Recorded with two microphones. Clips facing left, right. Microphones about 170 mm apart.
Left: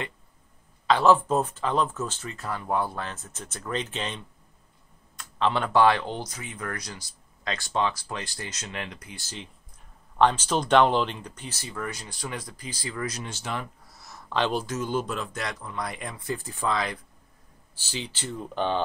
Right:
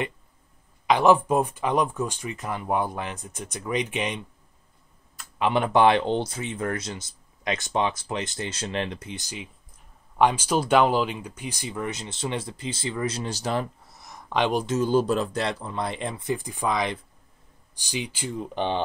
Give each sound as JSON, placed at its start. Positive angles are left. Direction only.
{"t": 0.8, "sound": "speech", "side_deg": -15}
{"t": 5.4, "sound": "speech", "side_deg": -20}
{"t": 13.9, "sound": "a sound", "side_deg": -15}
{"t": 14.7, "sound": "speech", "side_deg": -35}